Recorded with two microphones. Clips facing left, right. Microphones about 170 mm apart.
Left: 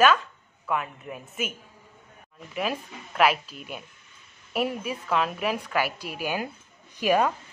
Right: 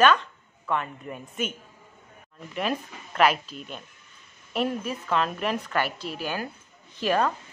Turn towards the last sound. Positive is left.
turn(degrees=10)  # may be behind; listen again after turning